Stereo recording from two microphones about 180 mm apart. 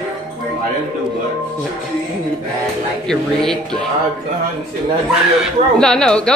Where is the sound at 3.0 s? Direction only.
5° left (ahead or behind).